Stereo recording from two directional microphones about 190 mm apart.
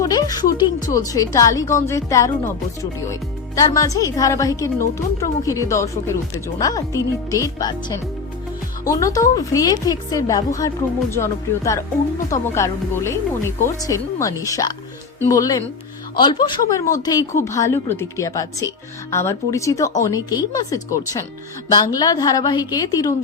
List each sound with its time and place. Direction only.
0.0 s a woman's voice: 20° left (ahead or behind)